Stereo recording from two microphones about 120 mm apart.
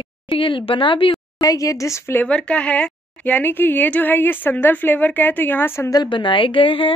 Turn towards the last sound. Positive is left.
turn(degrees=45)  # may be behind; listen again after turning